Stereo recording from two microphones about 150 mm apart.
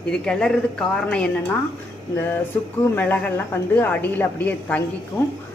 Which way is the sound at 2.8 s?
15° left (ahead or behind).